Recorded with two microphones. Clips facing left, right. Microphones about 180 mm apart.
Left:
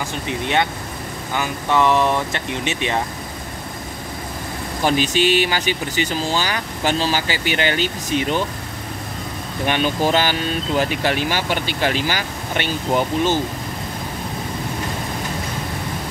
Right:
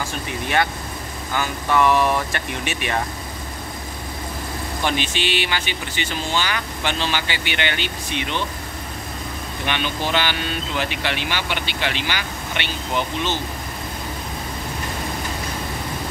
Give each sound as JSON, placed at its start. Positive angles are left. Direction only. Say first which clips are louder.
{"t": 1.3, "sound": "speech", "louder": "left 1 dB", "side_deg": 25}
{"t": 4.8, "sound": "speech", "louder": "left 7 dB", "side_deg": 40}
{"t": 9.7, "sound": "speech", "louder": "left 6 dB", "side_deg": 40}